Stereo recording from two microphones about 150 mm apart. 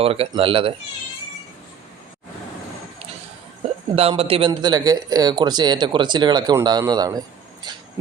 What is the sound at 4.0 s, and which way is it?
Speech, 40° right (ahead or behind).